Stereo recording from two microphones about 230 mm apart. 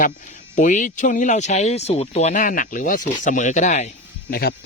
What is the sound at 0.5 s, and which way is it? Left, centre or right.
Speech, left.